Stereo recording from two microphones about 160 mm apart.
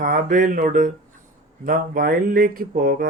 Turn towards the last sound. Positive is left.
turn(degrees=-65)  # may be behind; listen again after turning